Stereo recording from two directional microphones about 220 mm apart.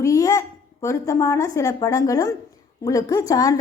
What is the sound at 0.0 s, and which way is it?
A child's voice, 15° left (ahead or behind).